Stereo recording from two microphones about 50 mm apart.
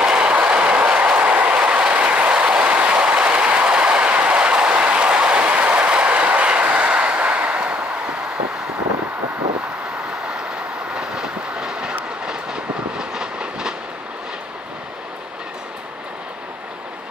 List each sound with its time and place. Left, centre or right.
0.0 s train: centre
11.0 s train: centre